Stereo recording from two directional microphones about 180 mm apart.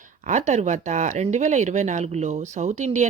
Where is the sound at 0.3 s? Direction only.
40° right (ahead or behind).